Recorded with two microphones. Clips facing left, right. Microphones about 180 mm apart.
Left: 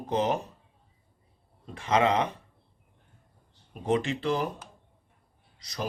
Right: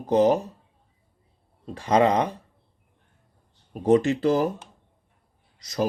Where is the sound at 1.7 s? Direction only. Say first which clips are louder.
Right 4 dB; 35° right (ahead or behind).